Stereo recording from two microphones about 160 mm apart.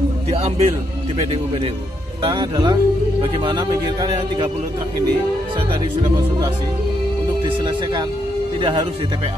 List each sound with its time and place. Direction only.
0.3 s music: 40° right (ahead or behind)
2.2 s speech: 30° right (ahead or behind)
7.4 s speech: 30° right (ahead or behind)